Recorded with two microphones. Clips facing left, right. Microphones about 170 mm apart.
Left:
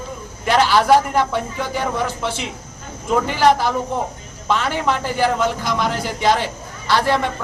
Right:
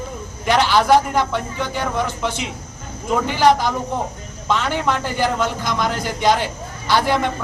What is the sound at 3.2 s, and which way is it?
A man's voice, centre (ahead or behind).